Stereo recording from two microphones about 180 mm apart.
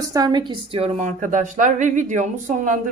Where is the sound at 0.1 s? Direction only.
20° right (ahead or behind).